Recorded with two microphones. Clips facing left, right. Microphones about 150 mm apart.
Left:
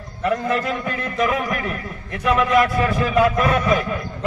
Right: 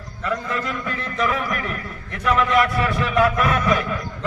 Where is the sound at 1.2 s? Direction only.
40° left (ahead or behind).